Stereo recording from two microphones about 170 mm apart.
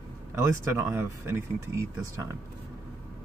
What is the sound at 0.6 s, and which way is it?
Speech, 15° right (ahead or behind).